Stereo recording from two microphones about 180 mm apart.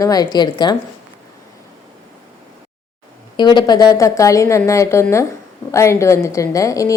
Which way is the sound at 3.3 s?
25° left (ahead or behind).